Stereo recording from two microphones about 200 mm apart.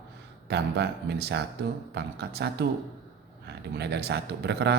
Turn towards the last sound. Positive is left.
turn(degrees=-55)  # may be behind; listen again after turning